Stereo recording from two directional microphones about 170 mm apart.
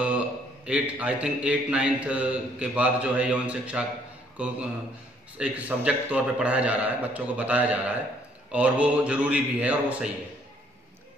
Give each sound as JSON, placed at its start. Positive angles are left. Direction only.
{"t": 0.7, "sound": "a man's voice", "side_deg": -10}